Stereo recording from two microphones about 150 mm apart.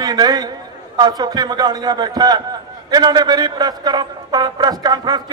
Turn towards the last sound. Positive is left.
turn(degrees=-30)  # may be behind; listen again after turning